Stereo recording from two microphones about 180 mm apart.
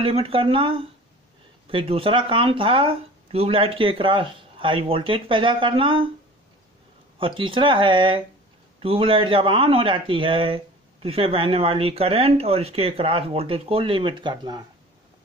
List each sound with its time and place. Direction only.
0.0 s a man's voice: 30° right (ahead or behind)
7.2 s a man's voice: 30° right (ahead or behind)